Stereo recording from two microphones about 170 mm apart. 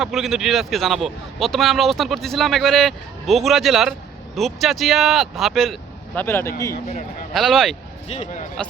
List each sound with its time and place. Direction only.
0.0 s a man's voice: centre (ahead or behind)
6.1 s speech: 15° left (ahead or behind)
7.3 s a man's voice: centre (ahead or behind)
8.1 s speech: 40° left (ahead or behind)